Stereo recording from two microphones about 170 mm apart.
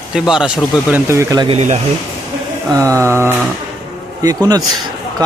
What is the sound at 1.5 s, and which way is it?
Speech, 45° right (ahead or behind).